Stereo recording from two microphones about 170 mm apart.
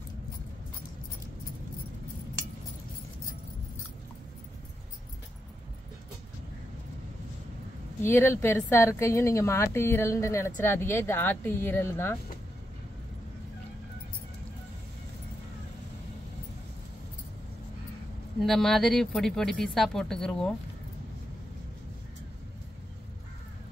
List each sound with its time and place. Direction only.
8.0 s a woman's voice: 15° left (ahead or behind)
18.4 s speech: centre (ahead or behind)